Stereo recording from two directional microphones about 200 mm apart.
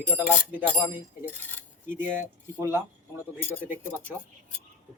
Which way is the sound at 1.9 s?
10° right (ahead or behind).